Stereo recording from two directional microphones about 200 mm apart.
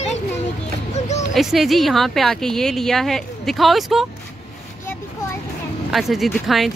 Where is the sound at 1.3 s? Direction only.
Centre (ahead or behind).